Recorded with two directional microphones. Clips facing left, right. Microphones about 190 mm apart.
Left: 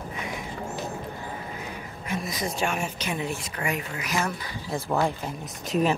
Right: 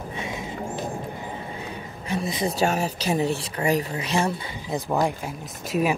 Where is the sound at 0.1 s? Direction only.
25° right (ahead or behind).